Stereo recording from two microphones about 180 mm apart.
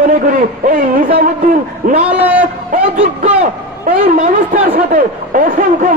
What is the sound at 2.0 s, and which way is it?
Speech, 10° right (ahead or behind).